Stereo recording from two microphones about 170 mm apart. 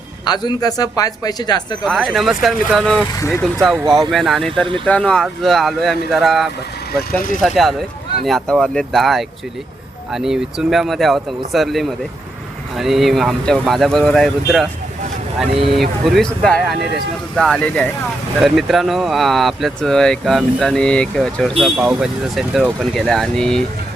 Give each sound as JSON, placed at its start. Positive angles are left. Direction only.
{"t": 0.3, "sound": "speech", "side_deg": 25}
{"t": 1.8, "sound": "speech", "side_deg": 0}
{"t": 3.2, "sound": "speech", "side_deg": 15}
{"t": 3.4, "sound": "speech", "side_deg": 0}
{"t": 15.7, "sound": "speech", "side_deg": 0}